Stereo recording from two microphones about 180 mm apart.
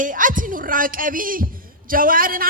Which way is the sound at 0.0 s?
50° right (ahead or behind).